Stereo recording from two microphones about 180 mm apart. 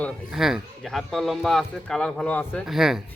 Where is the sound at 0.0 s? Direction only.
Centre (ahead or behind).